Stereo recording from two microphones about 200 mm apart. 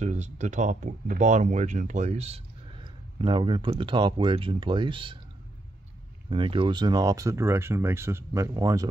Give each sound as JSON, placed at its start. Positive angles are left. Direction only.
{"t": 0.0, "sound": "speech", "side_deg": -35}
{"t": 6.3, "sound": "speech", "side_deg": -25}